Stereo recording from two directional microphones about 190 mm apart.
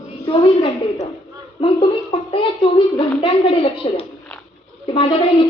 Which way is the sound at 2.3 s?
25° left (ahead or behind).